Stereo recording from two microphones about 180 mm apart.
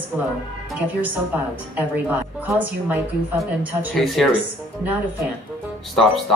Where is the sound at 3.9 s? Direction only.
Centre (ahead or behind).